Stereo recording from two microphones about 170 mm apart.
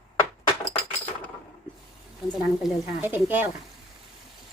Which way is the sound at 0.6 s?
10° left (ahead or behind).